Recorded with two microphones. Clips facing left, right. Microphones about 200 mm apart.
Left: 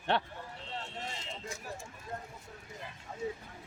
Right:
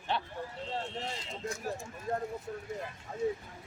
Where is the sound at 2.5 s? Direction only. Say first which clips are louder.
Right 11 dB; 70° right (ahead or behind).